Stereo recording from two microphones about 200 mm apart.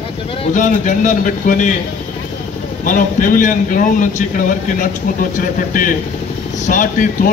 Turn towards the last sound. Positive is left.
turn(degrees=40)  # may be behind; listen again after turning